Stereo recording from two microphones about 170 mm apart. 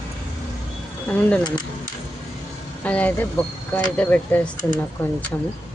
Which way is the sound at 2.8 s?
10° left (ahead or behind).